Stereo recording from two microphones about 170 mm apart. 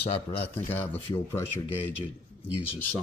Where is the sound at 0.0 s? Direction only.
35° left (ahead or behind).